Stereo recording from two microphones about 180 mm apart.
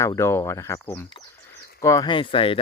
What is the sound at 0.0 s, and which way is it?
Speech, 15° left (ahead or behind).